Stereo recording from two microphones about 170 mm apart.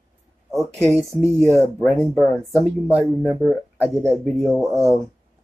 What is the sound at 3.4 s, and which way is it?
Speech, 5° left (ahead or behind).